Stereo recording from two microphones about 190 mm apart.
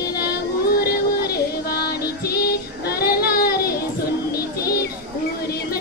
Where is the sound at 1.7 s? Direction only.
55° left (ahead or behind).